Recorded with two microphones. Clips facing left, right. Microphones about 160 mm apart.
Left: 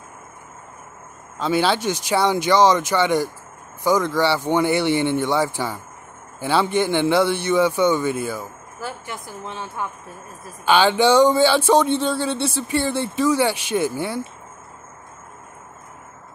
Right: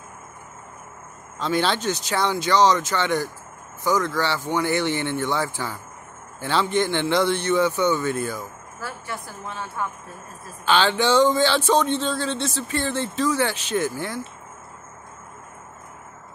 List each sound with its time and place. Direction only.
1.4 s a woman's voice: 10° left (ahead or behind)